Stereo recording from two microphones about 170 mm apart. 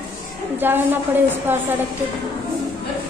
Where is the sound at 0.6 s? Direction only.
10° right (ahead or behind).